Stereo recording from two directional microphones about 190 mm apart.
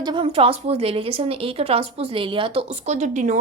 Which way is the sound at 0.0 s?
25° right (ahead or behind).